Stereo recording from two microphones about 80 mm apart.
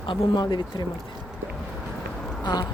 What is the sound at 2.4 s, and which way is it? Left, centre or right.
Speech, left.